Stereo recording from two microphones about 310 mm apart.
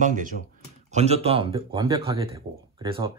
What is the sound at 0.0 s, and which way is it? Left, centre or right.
Speech, right.